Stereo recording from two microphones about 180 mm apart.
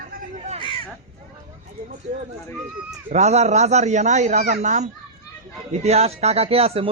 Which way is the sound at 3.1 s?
40° right (ahead or behind).